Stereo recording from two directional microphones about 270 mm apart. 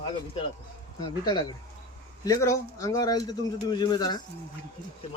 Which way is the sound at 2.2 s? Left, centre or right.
Centre.